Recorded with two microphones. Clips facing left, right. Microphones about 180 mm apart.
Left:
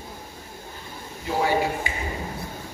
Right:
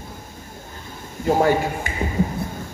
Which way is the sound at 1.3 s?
50° right (ahead or behind).